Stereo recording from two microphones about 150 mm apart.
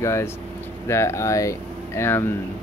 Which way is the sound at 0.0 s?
20° left (ahead or behind).